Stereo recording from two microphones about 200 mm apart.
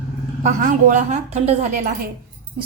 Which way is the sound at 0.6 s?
35° right (ahead or behind).